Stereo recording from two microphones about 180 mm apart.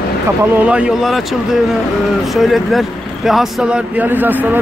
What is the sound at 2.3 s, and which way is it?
Speech, centre (ahead or behind).